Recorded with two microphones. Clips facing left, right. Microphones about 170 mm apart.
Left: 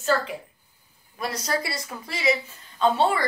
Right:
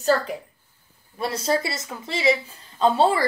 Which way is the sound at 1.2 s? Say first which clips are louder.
Right 4 dB; 25° right (ahead or behind).